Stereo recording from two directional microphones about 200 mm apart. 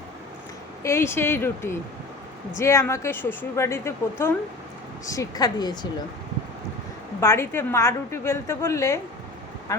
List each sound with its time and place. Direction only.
0.8 s a woman's voice: 15° left (ahead or behind)
7.2 s a woman's voice: 10° left (ahead or behind)